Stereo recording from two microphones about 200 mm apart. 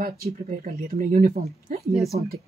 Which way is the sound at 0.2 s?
45° right (ahead or behind).